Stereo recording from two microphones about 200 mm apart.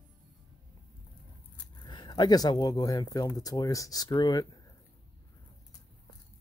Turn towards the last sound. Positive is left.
turn(degrees=20)  # may be behind; listen again after turning